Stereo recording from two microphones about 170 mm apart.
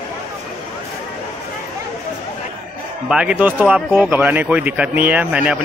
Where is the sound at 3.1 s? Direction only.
5° right (ahead or behind).